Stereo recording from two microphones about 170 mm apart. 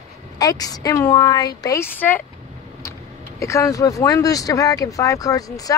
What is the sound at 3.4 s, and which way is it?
Speech, 20° left (ahead or behind).